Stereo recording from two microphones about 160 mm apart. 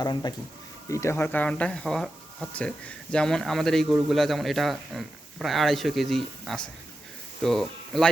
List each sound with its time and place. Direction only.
0.0 s speech: 25° left (ahead or behind); by 8.1 s centre (ahead or behind)